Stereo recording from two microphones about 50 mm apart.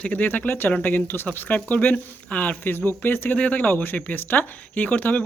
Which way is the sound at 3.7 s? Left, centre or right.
Left.